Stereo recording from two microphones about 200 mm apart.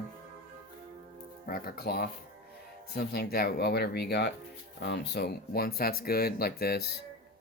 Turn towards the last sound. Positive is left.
turn(degrees=50)  # may be behind; listen again after turning